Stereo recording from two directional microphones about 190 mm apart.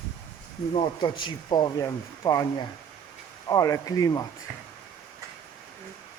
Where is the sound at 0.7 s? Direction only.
25° left (ahead or behind).